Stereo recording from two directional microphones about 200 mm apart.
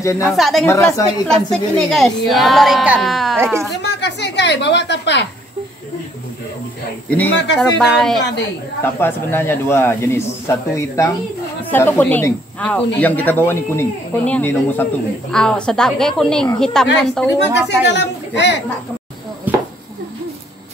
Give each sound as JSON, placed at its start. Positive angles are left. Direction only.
{"t": 0.2, "sound": "speech", "side_deg": 0}
{"t": 0.7, "sound": "speech", "side_deg": 10}
{"t": 3.8, "sound": "a woman's voice", "side_deg": 60}
{"t": 7.1, "sound": "speech", "side_deg": 10}
{"t": 17.6, "sound": "speech", "side_deg": 60}
{"t": 19.5, "sound": "a sound", "side_deg": -10}